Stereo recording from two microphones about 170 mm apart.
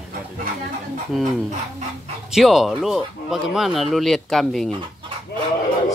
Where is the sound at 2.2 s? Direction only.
Centre (ahead or behind).